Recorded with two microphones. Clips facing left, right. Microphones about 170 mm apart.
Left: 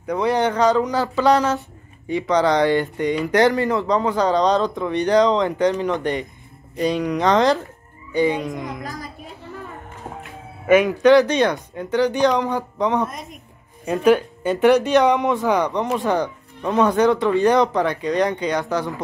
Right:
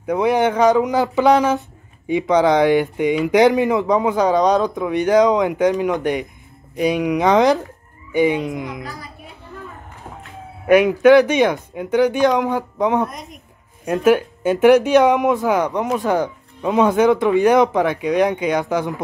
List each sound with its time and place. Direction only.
0.0 s speech: 10° right (ahead or behind)
8.1 s frog: 15° right (ahead or behind)
8.8 s a child's voice: 40° left (ahead or behind)
10.7 s speech: 10° right (ahead or behind)